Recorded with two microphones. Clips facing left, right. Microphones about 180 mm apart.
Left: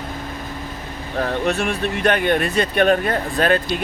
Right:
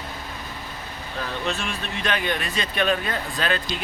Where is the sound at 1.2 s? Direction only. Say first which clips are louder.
Left 8 dB; 55° left (ahead or behind).